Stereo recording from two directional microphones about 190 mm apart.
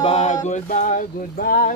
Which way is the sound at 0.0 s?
35° left (ahead or behind).